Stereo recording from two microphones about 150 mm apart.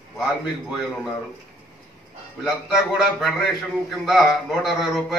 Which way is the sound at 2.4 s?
Centre (ahead or behind).